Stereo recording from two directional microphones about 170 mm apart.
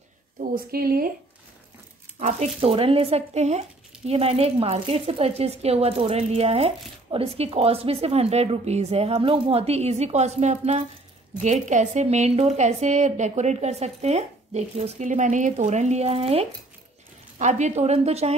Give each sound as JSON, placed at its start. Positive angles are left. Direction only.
{"t": 0.4, "sound": "a woman's voice", "side_deg": -60}
{"t": 2.1, "sound": "a woman's voice", "side_deg": -40}